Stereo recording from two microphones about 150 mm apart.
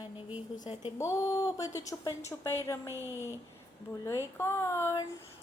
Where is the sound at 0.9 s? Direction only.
20° left (ahead or behind).